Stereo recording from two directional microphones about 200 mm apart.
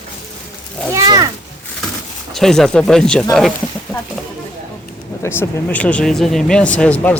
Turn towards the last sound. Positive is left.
turn(degrees=5)  # may be behind; listen again after turning